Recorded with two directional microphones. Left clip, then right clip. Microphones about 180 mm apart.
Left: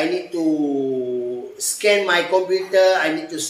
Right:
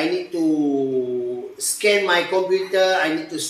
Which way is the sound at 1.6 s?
15° left (ahead or behind).